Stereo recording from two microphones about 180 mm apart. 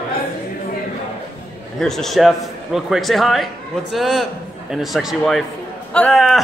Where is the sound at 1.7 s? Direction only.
Centre (ahead or behind).